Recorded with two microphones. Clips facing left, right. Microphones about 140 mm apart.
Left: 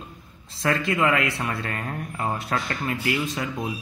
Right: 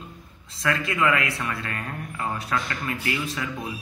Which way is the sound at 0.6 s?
35° left (ahead or behind).